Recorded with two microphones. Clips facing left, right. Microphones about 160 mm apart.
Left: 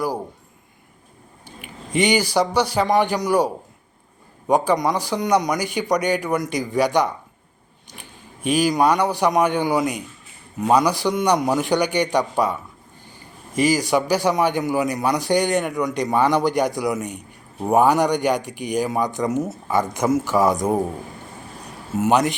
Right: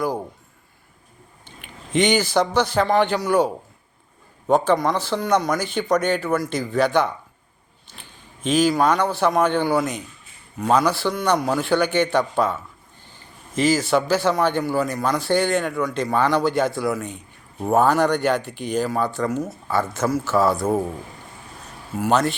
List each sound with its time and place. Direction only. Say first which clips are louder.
1.5 s a man's voice: left 4 dB; 10° left (ahead or behind)
8.4 s a man's voice: even; 10° left (ahead or behind)
13.6 s a man's voice: even; 15° left (ahead or behind)
21.9 s a man's voice: left 2 dB; 20° left (ahead or behind)